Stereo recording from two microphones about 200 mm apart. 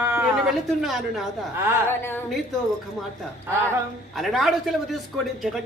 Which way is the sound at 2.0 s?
10° left (ahead or behind).